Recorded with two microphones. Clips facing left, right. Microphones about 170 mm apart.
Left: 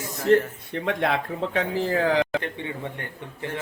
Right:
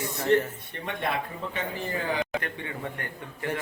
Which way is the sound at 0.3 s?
90° left.